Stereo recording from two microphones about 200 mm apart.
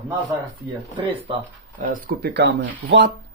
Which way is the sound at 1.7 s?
50° right (ahead or behind).